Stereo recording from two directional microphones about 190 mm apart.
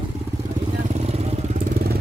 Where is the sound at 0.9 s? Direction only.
35° right (ahead or behind).